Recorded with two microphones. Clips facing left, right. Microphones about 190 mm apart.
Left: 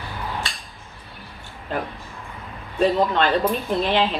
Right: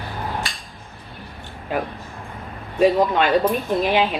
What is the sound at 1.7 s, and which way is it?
Speech, 10° right (ahead or behind).